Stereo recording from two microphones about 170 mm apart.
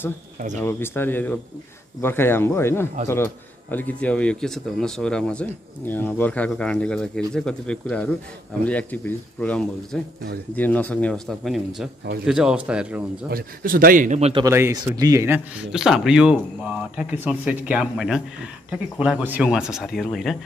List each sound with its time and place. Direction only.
0.6 s speech: 15° left (ahead or behind); by 13.0 s 5° right (ahead or behind)
13.3 s a man's voice: 60° right (ahead or behind)
14.5 s speech: 15° right (ahead or behind); by 20.3 s centre (ahead or behind)